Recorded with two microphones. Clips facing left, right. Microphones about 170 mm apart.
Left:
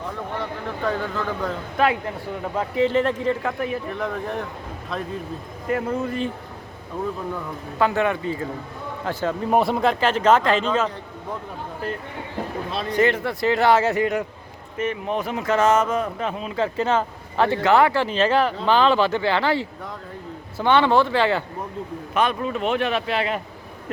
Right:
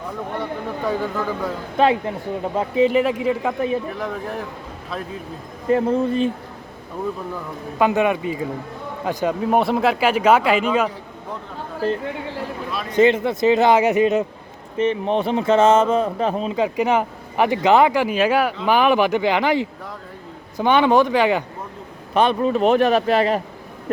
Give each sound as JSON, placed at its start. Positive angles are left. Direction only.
{"t": 0.9, "sound": "speech", "side_deg": -10}
{"t": 1.8, "sound": "speech", "side_deg": -25}
{"t": 5.6, "sound": "speech", "side_deg": -30}
{"t": 7.8, "sound": "speech", "side_deg": -15}
{"t": 9.4, "sound": "speech", "side_deg": 0}
{"t": 12.9, "sound": "speech", "side_deg": -20}
{"t": 16.5, "sound": "speech", "side_deg": -15}
{"t": 22.1, "sound": "speech", "side_deg": -30}